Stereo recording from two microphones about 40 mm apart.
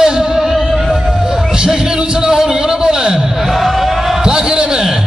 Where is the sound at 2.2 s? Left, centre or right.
Centre.